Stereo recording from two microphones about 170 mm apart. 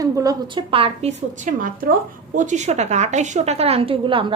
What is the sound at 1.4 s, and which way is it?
A woman's voice, 55° right (ahead or behind).